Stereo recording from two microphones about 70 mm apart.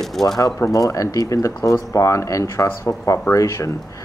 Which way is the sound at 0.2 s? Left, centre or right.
Centre.